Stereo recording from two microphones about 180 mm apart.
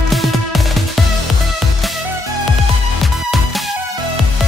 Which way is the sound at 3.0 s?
Centre (ahead or behind).